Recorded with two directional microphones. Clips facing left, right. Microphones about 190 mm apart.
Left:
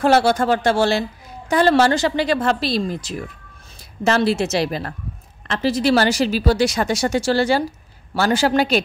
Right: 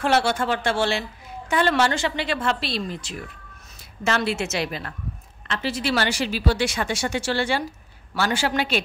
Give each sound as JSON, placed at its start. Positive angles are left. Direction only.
{"t": 0.0, "sound": "speech", "side_deg": 40}